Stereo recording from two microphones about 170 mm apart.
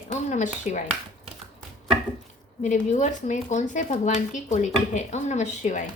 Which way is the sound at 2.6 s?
45° left (ahead or behind).